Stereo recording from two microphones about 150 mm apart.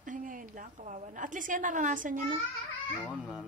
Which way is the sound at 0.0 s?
60° right (ahead or behind).